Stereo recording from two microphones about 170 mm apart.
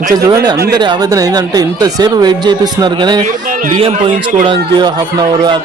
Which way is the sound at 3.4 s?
55° right (ahead or behind).